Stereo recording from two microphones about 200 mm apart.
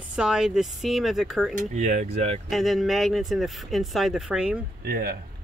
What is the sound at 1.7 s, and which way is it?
Speech, 35° right (ahead or behind).